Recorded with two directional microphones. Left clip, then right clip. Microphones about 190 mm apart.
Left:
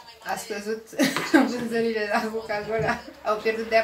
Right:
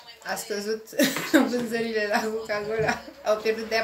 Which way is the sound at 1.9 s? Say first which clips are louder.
Even; 45° right (ahead or behind).